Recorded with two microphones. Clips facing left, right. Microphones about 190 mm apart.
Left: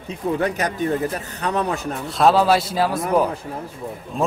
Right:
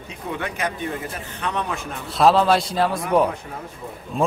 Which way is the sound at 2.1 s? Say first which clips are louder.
Even; centre (ahead or behind).